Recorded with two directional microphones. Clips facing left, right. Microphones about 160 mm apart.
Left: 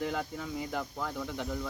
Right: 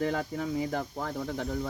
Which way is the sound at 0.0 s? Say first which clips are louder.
Right 4 dB; 45° right (ahead or behind).